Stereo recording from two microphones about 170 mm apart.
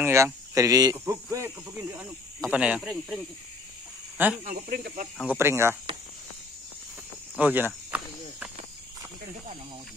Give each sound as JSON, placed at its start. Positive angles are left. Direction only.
{"t": 0.0, "sound": "speech", "side_deg": -15}
{"t": 4.5, "sound": "speech", "side_deg": -60}
{"t": 5.2, "sound": "speech", "side_deg": -10}
{"t": 7.3, "sound": "speech", "side_deg": -10}